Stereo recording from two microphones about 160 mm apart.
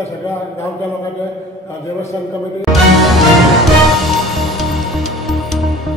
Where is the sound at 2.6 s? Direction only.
Centre (ahead or behind).